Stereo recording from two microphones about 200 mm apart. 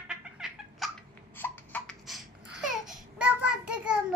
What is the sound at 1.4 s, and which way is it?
Babbling, 5° left (ahead or behind).